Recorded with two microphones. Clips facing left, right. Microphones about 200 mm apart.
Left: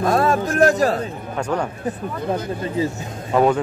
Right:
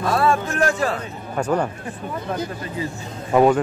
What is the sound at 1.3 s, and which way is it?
Speech, 5° right (ahead or behind).